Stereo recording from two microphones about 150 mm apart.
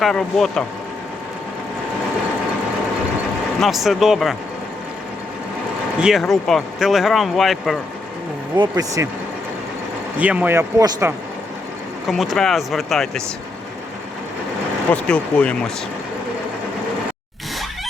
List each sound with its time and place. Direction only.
0.0 s speech: centre (ahead or behind)
3.6 s speech: centre (ahead or behind)
6.0 s speech: centre (ahead or behind)
8.5 s speech: 30° right (ahead or behind)
10.2 s a man's voice: 10° right (ahead or behind)
12.0 s speech: centre (ahead or behind)
14.9 s speech: 10° left (ahead or behind)